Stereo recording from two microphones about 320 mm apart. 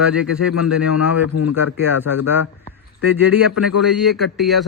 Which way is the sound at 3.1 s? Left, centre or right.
Left.